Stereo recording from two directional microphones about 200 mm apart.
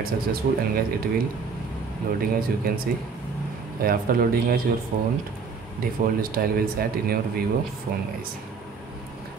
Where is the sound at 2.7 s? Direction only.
50° right (ahead or behind).